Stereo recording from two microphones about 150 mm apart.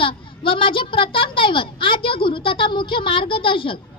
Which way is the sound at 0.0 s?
35° left (ahead or behind).